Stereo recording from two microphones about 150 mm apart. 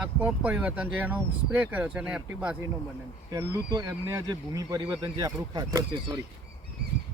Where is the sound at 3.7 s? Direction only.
25° right (ahead or behind).